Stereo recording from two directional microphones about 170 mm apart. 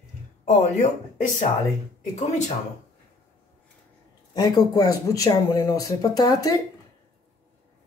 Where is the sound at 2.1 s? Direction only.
45° left (ahead or behind).